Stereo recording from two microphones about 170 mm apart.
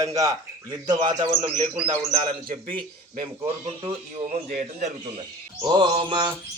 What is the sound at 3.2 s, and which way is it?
Speech, 35° right (ahead or behind).